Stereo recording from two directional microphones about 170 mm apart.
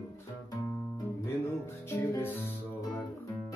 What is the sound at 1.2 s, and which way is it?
Music, 15° left (ahead or behind).